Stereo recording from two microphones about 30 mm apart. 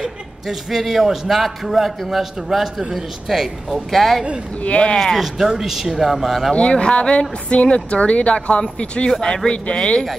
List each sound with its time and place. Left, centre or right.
0.5 s a man's voice: centre
3.7 s a man's voice: centre
4.6 s speech: left
4.9 s speech: centre
5.2 s speech: centre
6.5 s speech: left
9.1 s speech: centre